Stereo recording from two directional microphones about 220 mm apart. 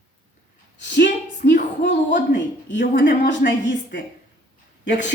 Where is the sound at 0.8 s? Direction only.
55° left (ahead or behind).